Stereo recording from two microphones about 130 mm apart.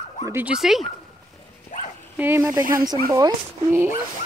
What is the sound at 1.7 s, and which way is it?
Dog, 85° left.